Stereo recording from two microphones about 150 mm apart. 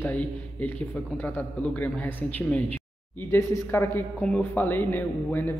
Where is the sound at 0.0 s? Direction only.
10° left (ahead or behind).